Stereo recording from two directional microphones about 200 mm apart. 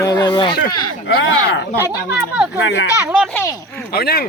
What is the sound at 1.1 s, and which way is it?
Speech, 65° left (ahead or behind).